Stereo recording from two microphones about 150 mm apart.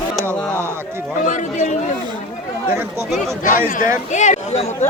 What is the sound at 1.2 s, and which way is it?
Speech, 55° left (ahead or behind).